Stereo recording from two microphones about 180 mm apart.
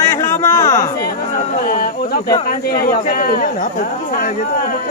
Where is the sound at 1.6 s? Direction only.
50° left (ahead or behind).